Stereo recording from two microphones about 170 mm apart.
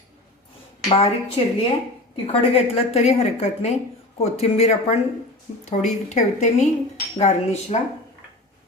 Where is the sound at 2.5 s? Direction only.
35° left (ahead or behind).